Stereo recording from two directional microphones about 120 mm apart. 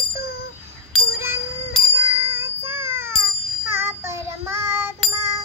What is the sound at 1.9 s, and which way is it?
Bicycle bell, 20° right (ahead or behind).